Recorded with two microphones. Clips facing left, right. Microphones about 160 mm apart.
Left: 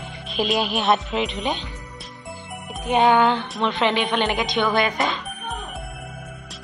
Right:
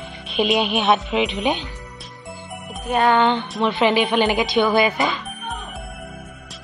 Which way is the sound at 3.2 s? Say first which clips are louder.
Right 1 dB; centre (ahead or behind).